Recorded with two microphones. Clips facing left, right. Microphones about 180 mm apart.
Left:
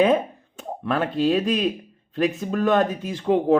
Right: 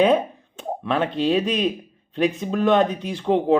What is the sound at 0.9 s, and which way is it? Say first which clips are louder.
Speech: even; 5° left (ahead or behind).